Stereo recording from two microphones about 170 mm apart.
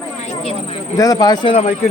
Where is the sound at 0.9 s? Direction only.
20° left (ahead or behind).